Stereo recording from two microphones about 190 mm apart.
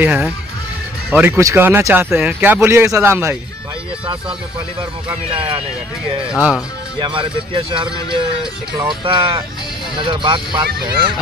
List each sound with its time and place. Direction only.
0.0 s speech: 5° right (ahead or behind)
5.3 s speech: 30° right (ahead or behind)
7.0 s speech: 25° right (ahead or behind)